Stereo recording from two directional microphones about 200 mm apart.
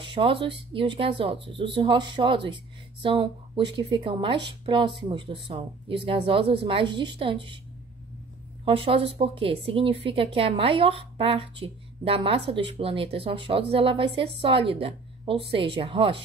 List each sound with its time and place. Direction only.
0.0 s a woman's voice: 25° right (ahead or behind)
8.6 s a woman's voice: 30° right (ahead or behind)